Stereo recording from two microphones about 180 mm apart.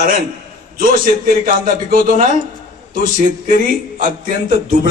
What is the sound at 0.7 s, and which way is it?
A man's voice, 50° right (ahead or behind).